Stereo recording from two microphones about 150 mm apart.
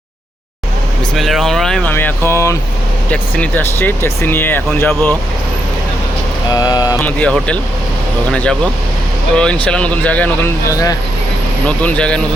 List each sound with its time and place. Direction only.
1.1 s speech: centre (ahead or behind)
1.9 s speech: 15° left (ahead or behind)
6.5 s vehicle: 25° left (ahead or behind)
7.0 s speech: 5° left (ahead or behind)
11.6 s speech: 10° left (ahead or behind)